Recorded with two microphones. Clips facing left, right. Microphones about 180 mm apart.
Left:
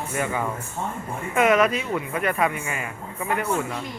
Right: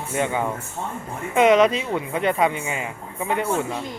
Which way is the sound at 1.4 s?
20° right (ahead or behind).